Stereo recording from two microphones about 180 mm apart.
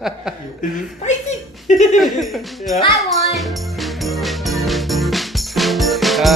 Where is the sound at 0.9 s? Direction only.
40° left (ahead or behind).